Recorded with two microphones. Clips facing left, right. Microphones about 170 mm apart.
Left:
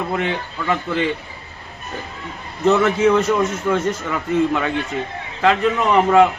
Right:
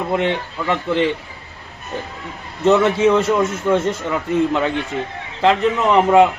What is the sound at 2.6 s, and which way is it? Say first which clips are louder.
A man's voice: right 1 dB; 25° right (ahead or behind).